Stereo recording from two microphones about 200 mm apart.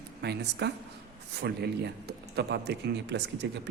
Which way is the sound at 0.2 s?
55° right (ahead or behind).